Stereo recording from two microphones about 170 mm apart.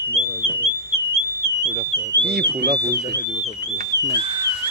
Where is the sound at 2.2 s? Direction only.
70° right (ahead or behind).